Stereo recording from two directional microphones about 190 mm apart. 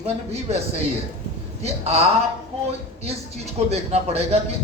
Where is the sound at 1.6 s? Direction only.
30° right (ahead or behind).